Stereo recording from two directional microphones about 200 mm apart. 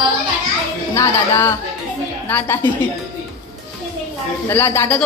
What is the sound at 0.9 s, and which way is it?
Speech, 10° left (ahead or behind).